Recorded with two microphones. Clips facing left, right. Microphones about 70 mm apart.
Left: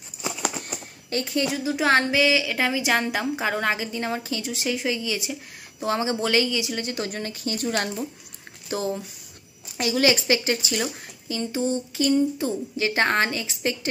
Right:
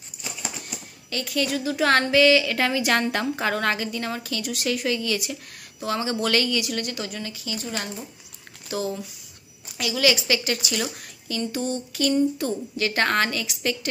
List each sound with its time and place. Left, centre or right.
0.6 s typewriter: left
1.2 s a woman's voice: left
7.0 s speech: left
8.6 s a woman's voice: left